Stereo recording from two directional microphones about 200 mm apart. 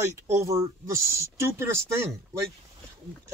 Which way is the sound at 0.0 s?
15° right (ahead or behind).